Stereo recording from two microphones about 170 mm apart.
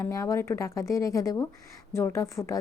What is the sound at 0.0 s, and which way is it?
A woman's voice, 20° left (ahead or behind).